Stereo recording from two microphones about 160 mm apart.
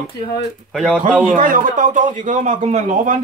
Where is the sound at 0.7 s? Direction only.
Centre (ahead or behind).